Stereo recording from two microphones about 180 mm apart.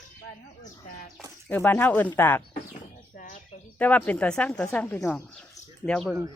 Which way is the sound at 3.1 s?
50° left (ahead or behind).